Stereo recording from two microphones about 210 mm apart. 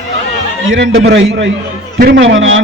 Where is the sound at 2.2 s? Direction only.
65° right (ahead or behind).